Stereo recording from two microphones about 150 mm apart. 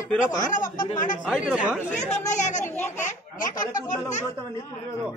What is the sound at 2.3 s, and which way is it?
Speech, 55° left (ahead or behind).